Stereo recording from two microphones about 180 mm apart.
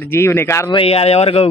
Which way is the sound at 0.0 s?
15° left (ahead or behind).